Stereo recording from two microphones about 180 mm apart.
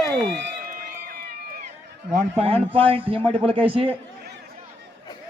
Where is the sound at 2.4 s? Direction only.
30° right (ahead or behind).